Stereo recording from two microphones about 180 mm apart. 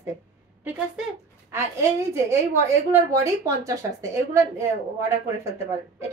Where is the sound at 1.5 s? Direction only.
15° right (ahead or behind).